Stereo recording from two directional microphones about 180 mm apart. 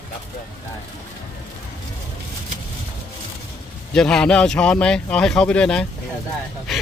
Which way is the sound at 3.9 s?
5° left (ahead or behind).